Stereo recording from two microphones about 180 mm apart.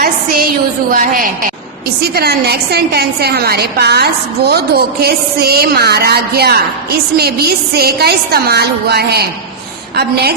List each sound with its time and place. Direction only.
0.0 s a woman's voice: 55° right (ahead or behind)
2.0 s a woman's voice: 60° right (ahead or behind)